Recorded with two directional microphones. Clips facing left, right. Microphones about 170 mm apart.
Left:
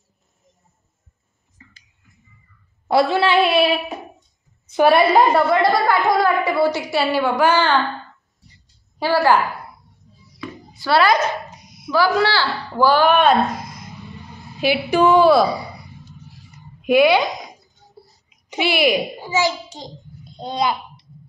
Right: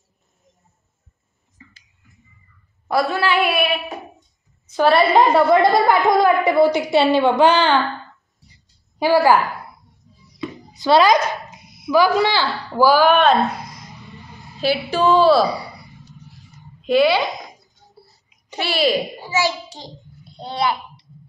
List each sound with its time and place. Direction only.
2.9 s a woman's voice: 25° left (ahead or behind)
4.7 s a child's voice: 10° left (ahead or behind)
5.5 s a woman's voice: 20° right (ahead or behind)
9.0 s a woman's voice: 15° right (ahead or behind)
10.4 s a sound: 20° right (ahead or behind)
11.9 s a woman's voice: 15° right (ahead or behind)
14.6 s a child's voice: 15° left (ahead or behind)
16.8 s speech: 15° left (ahead or behind)
18.5 s a child's voice: 15° left (ahead or behind)